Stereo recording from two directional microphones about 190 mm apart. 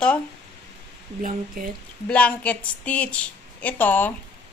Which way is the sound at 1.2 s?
45° right (ahead or behind).